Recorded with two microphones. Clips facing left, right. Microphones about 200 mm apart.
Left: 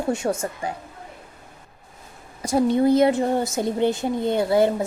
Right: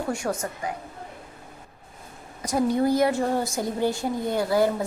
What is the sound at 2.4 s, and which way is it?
A woman's voice, 25° left (ahead or behind).